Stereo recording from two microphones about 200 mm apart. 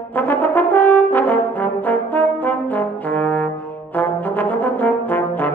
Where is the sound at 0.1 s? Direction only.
10° left (ahead or behind).